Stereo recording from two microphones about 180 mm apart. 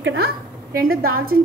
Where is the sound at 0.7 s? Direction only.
55° right (ahead or behind).